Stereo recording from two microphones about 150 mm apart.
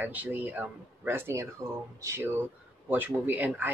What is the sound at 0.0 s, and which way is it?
Speech, 10° right (ahead or behind).